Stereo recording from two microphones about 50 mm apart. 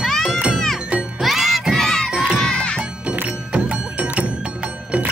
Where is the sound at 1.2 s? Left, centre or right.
Centre.